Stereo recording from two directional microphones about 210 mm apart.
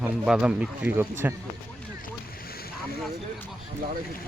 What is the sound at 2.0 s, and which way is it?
Boat, 45° left (ahead or behind).